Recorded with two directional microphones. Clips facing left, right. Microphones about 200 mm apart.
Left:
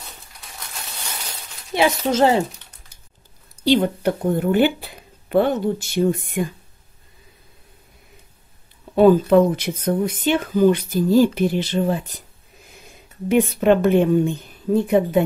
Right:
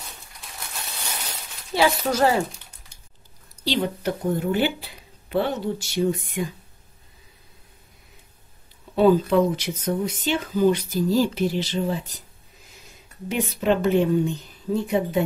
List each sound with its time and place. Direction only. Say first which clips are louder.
1.7 s speech: left 2 dB; 20° left (ahead or behind)
3.6 s speech: left 7 dB; 50° left (ahead or behind)
8.9 s speech: left 4 dB; 50° left (ahead or behind)
13.3 s speech: left 7 dB; 55° left (ahead or behind)